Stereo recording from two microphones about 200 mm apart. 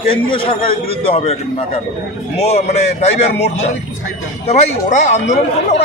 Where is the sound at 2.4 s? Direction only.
30° left (ahead or behind).